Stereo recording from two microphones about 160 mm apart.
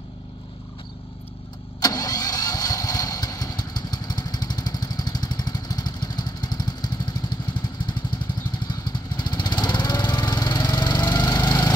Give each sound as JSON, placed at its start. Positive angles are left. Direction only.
{"t": 1.8, "sound": "vehicle", "side_deg": 25}
{"t": 8.6, "sound": "lawn mower", "side_deg": 25}